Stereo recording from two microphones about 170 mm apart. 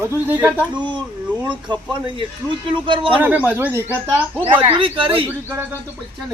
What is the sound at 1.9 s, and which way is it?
Speech, 30° right (ahead or behind).